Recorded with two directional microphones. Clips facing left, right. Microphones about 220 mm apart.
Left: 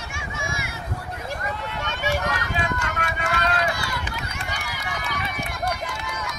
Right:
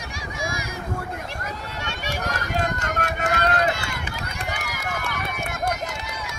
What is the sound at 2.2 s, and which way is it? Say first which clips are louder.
Run: right 1 dB; 40° right (ahead or behind).